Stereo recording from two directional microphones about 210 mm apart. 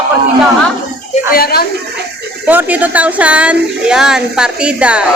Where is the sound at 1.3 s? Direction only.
45° left (ahead or behind).